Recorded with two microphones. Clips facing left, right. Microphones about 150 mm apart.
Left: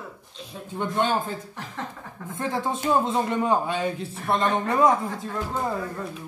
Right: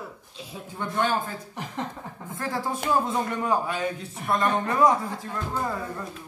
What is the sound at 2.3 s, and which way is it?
Speech, 20° left (ahead or behind).